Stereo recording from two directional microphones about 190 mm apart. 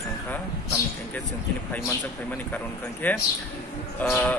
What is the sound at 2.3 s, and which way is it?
Speech, 10° left (ahead or behind).